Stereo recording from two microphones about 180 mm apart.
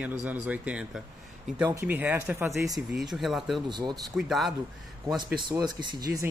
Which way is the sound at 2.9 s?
Centre (ahead or behind).